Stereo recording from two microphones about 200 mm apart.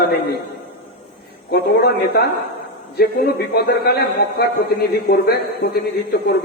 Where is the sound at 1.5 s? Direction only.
55° left (ahead or behind).